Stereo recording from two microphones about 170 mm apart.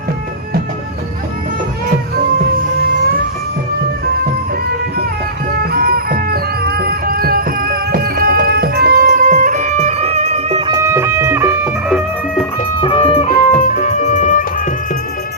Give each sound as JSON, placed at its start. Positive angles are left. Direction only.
{"t": 5.5, "sound": "music", "side_deg": -60}
{"t": 10.8, "sound": "music", "side_deg": -15}
{"t": 12.8, "sound": "music", "side_deg": 30}
{"t": 13.3, "sound": "music", "side_deg": 50}